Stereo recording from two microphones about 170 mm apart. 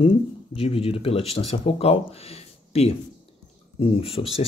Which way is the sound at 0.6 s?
35° left (ahead or behind).